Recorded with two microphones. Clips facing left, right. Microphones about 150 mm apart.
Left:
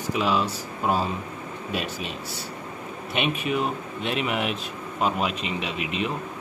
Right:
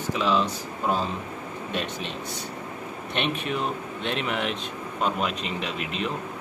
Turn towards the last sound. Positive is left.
turn(degrees=5)  # may be behind; listen again after turning